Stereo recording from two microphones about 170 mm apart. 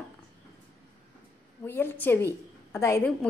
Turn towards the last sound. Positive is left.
turn(degrees=15)  # may be behind; listen again after turning